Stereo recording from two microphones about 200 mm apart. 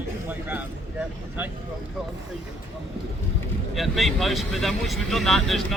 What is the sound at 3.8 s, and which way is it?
Speech, centre (ahead or behind).